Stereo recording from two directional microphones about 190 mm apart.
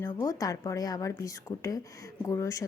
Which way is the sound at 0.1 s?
20° left (ahead or behind).